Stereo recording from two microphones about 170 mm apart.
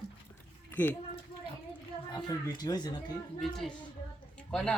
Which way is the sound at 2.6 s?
25° left (ahead or behind).